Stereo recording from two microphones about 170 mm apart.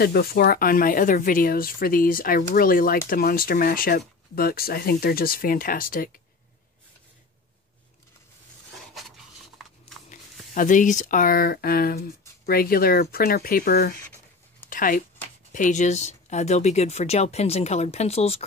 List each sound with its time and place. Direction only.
0.0 s speech: 65° left (ahead or behind)
8.7 s dishes: centre (ahead or behind)
10.5 s speech: 50° left (ahead or behind)
14.7 s a sound: 55° left (ahead or behind)
15.5 s speech: 45° left (ahead or behind)